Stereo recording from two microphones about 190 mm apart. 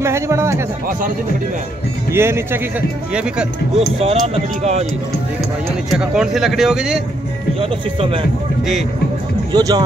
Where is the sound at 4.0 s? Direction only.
30° right (ahead or behind).